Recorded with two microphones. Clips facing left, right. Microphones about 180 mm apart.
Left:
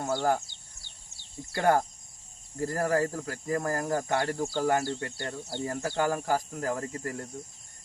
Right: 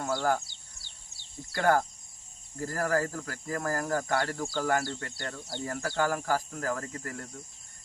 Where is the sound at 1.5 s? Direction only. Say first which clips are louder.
Left 1 dB; 20° left (ahead or behind).